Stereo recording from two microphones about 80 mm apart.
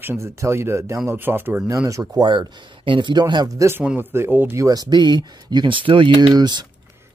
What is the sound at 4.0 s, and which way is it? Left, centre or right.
Speech, right.